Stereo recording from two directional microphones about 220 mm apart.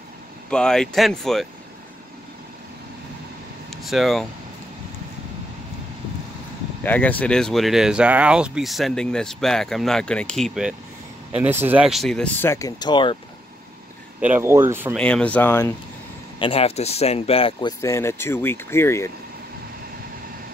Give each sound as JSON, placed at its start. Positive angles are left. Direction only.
{"t": 0.5, "sound": "speech", "side_deg": 5}
{"t": 3.7, "sound": "speech", "side_deg": 0}
{"t": 6.8, "sound": "speech", "side_deg": 10}
{"t": 14.2, "sound": "speech", "side_deg": -10}
{"t": 15.0, "sound": "speech", "side_deg": 5}
{"t": 16.3, "sound": "speech", "side_deg": 25}